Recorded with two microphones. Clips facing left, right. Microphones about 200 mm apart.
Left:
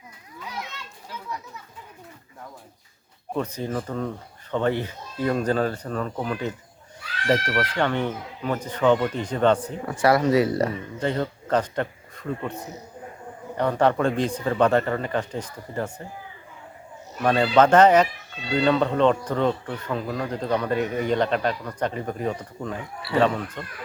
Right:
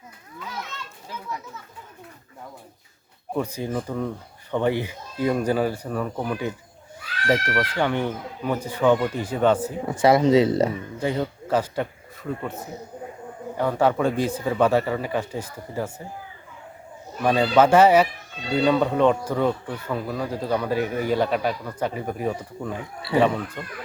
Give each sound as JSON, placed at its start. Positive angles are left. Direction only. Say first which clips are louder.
{"t": 3.3, "sound": "speech", "louder": "right 1 dB", "side_deg": -10}
{"t": 9.8, "sound": "speech", "louder": "right 3 dB", "side_deg": -20}
{"t": 11.0, "sound": "a man's voice", "louder": "even", "side_deg": -10}
{"t": 17.2, "sound": "speech", "louder": "even", "side_deg": -5}